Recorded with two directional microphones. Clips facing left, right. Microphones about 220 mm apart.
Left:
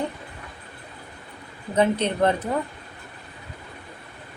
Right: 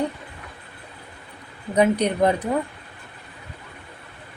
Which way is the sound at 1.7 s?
15° right (ahead or behind).